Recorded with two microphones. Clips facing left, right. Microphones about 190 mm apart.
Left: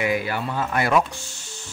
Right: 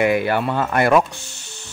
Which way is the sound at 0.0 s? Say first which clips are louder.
Right 6 dB; 60° right (ahead or behind).